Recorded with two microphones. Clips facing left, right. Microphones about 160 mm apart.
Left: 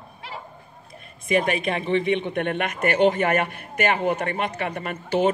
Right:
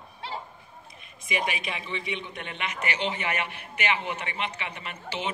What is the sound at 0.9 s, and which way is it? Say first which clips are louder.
A man's voice: left 10 dB; 50° left (ahead or behind).